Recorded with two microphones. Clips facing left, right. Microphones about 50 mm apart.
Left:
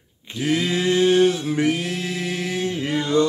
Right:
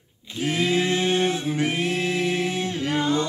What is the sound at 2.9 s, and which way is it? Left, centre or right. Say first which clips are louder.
Music: left 3 dB; right.